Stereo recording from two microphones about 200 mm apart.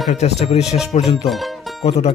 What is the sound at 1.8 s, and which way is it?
Speech, 30° left (ahead or behind).